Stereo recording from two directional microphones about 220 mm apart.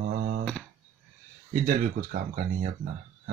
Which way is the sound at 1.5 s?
35° right (ahead or behind).